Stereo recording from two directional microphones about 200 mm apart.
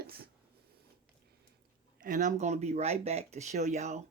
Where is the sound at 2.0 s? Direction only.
40° right (ahead or behind).